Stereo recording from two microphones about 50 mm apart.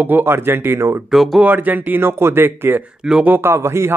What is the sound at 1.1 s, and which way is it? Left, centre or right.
Speech, centre.